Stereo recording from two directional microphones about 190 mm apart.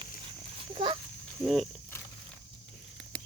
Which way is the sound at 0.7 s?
25° right (ahead or behind).